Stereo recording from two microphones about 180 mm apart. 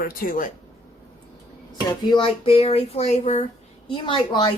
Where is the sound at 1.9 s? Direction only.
25° left (ahead or behind).